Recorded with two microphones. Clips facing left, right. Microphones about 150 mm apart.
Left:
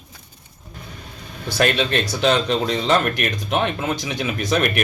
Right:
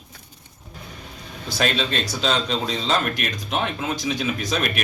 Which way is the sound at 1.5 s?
60° left (ahead or behind).